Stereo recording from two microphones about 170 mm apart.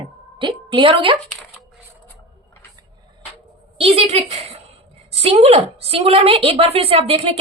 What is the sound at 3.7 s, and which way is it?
A woman's voice, 35° right (ahead or behind).